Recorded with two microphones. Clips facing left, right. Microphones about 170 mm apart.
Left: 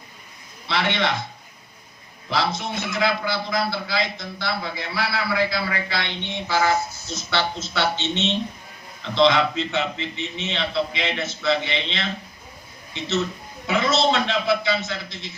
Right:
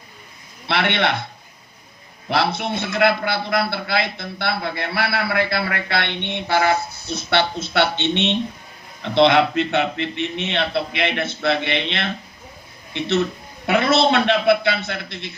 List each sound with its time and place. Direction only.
0.7 s a man's voice: 65° right (ahead or behind)
2.3 s a man's voice: 60° right (ahead or behind)